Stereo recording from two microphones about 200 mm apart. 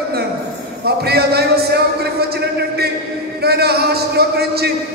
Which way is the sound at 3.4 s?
55° right (ahead or behind).